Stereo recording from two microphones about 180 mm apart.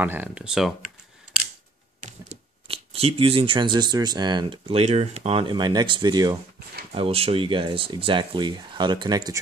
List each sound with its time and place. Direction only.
0.0 s speech: 10° right (ahead or behind)
2.0 s speech: 40° right (ahead or behind); by 6.4 s 20° right (ahead or behind)
6.9 s speech: 35° right (ahead or behind)